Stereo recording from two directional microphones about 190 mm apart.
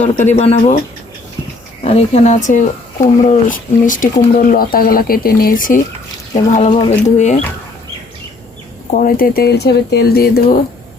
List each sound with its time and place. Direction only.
0.0 s speech: 40° left (ahead or behind)
1.8 s speech: 35° left (ahead or behind)
8.9 s speech: 45° left (ahead or behind)